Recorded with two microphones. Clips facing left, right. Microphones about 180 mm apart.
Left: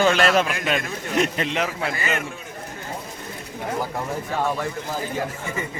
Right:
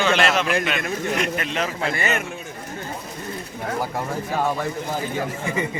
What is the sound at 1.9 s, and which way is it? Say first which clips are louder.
Speech: right 2 dB; 25° right (ahead or behind).